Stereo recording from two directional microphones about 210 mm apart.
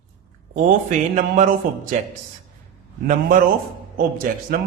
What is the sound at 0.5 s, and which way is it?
A man's voice, 40° right (ahead or behind).